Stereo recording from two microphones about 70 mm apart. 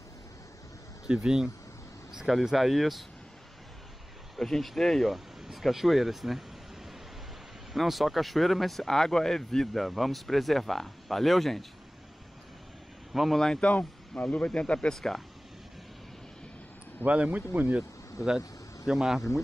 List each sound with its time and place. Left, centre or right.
1.0 s speech: centre
4.4 s speech: centre
7.7 s speech: centre
13.1 s a man's voice: centre
15.0 s speech: centre
17.0 s speech: right
18.9 s speech: centre